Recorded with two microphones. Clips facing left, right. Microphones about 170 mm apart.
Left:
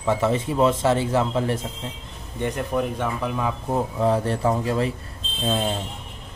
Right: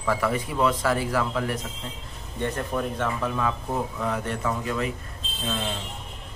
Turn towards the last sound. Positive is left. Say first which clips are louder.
# left 6 dB
turn(degrees=35)  # may be behind; listen again after turning